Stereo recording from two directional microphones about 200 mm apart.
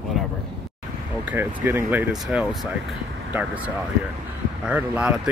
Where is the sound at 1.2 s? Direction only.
10° right (ahead or behind).